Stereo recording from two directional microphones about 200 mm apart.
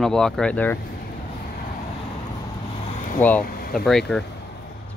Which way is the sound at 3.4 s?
45° left (ahead or behind).